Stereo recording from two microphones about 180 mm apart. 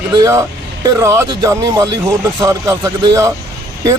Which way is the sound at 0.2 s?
15° right (ahead or behind).